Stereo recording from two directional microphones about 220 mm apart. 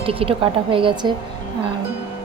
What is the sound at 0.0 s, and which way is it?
A woman's voice, 25° right (ahead or behind).